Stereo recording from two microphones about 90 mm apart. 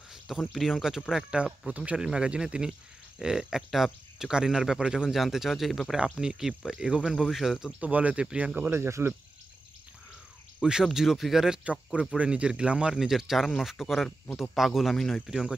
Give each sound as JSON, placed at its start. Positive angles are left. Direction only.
{"t": 0.6, "sound": "speech", "side_deg": 0}
{"t": 7.6, "sound": "speech", "side_deg": -15}
{"t": 10.6, "sound": "speech", "side_deg": -5}